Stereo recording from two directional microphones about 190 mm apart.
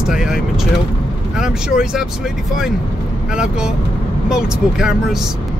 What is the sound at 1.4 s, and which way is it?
Speech, 5° right (ahead or behind).